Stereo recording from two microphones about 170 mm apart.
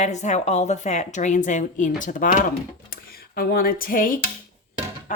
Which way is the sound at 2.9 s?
60° left (ahead or behind).